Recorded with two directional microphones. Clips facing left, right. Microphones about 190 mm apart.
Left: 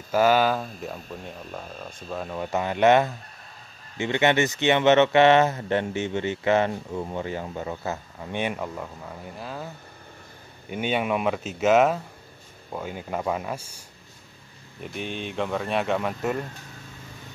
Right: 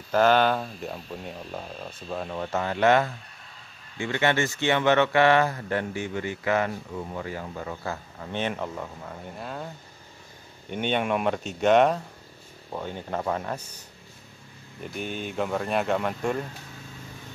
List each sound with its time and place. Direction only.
0.1 s speech: 5° left (ahead or behind)
2.5 s speech: 15° left (ahead or behind); by 9.7 s centre (ahead or behind)
10.7 s speech: 5° left (ahead or behind)
14.8 s speech: centre (ahead or behind)